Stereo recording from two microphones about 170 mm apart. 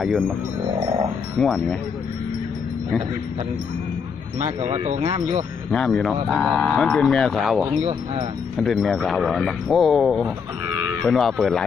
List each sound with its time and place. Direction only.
1.4 s cattle: 5° left (ahead or behind)
4.4 s speech: 40° right (ahead or behind)
5.7 s cattle: 5° left (ahead or behind)